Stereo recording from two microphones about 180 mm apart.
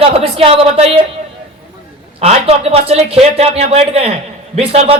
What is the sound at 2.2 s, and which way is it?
Speech, 35° right (ahead or behind).